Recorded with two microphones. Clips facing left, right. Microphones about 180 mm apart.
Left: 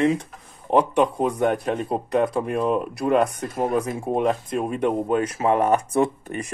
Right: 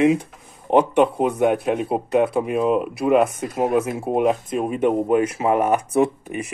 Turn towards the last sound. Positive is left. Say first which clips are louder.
# right 2 dB
turn(degrees=-5)  # may be behind; listen again after turning